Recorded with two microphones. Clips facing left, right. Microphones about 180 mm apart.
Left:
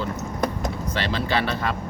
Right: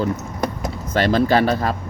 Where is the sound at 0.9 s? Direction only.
45° right (ahead or behind).